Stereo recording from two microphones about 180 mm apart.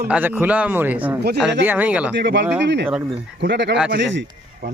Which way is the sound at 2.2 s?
75° right (ahead or behind).